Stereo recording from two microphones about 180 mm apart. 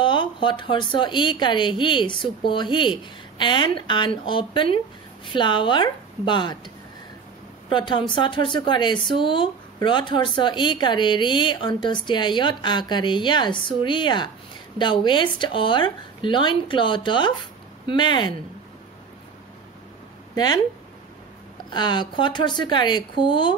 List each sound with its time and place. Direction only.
0.0 s speech: 25° left (ahead or behind)
7.7 s speech: 25° left (ahead or behind)
20.3 s speech: 25° left (ahead or behind)
21.6 s a woman's voice: 25° left (ahead or behind)